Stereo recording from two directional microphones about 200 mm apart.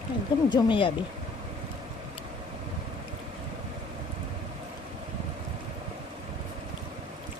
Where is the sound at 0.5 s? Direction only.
25° left (ahead or behind).